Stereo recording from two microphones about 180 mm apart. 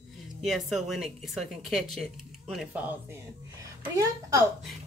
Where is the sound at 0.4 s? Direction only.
Centre (ahead or behind).